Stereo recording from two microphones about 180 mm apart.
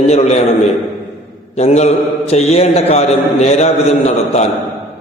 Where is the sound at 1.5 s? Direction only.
35° left (ahead or behind).